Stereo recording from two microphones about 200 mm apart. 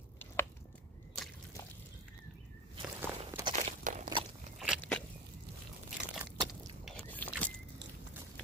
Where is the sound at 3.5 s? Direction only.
35° right (ahead or behind).